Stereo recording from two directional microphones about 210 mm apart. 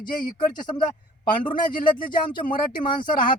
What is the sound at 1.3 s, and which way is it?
Speech, 40° left (ahead or behind).